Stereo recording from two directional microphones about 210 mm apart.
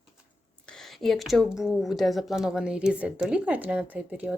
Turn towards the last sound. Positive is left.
turn(degrees=-5)  # may be behind; listen again after turning